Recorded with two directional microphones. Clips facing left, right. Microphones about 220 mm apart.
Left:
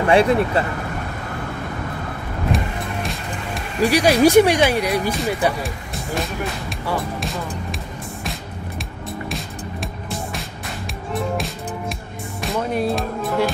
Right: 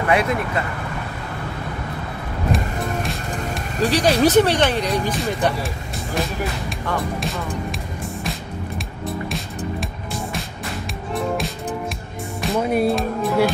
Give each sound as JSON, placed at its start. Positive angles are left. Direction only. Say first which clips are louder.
{"t": 0.1, "sound": "speech", "louder": "left 5 dB", "side_deg": 30}
{"t": 2.5, "sound": "music", "louder": "right 2 dB", "side_deg": 0}
{"t": 3.8, "sound": "speech", "louder": "left 2 dB", "side_deg": 15}
{"t": 5.2, "sound": "speech", "louder": "left 1 dB", "side_deg": 0}
{"t": 6.9, "sound": "speech", "louder": "even", "side_deg": 0}
{"t": 11.1, "sound": "music", "louder": "right 1 dB", "side_deg": 0}